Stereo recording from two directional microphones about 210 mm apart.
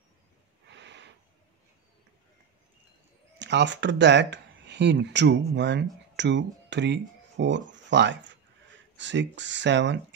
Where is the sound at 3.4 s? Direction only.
55° right (ahead or behind).